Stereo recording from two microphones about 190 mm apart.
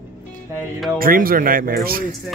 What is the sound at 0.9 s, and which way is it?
Speech, 50° right (ahead or behind).